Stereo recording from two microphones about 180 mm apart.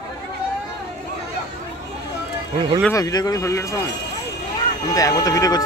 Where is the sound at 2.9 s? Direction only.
20° left (ahead or behind).